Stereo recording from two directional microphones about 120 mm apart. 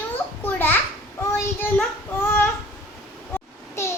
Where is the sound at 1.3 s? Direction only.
15° left (ahead or behind).